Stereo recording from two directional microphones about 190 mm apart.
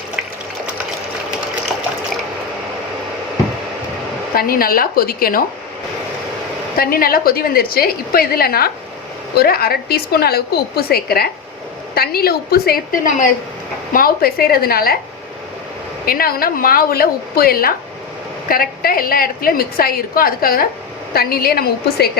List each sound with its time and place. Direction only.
4.4 s a woman's voice: 50° left (ahead or behind)
6.7 s a woman's voice: 50° left (ahead or behind)
16.0 s a woman's voice: 50° left (ahead or behind)